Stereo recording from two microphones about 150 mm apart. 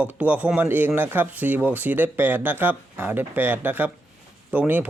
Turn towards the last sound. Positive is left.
turn(degrees=-10)  # may be behind; listen again after turning